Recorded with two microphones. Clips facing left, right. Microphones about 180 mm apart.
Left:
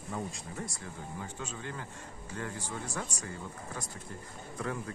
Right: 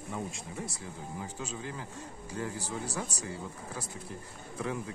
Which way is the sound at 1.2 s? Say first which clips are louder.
Right 3 dB; 10° right (ahead or behind).